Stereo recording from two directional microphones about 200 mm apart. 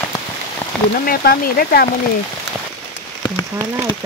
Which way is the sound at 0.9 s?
45° left (ahead or behind).